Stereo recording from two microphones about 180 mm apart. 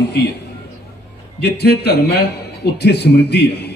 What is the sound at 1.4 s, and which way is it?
A man's voice, 65° left (ahead or behind).